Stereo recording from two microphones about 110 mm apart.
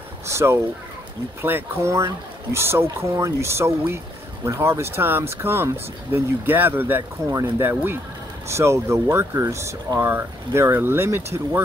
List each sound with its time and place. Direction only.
0.3 s speech: 25° right (ahead or behind)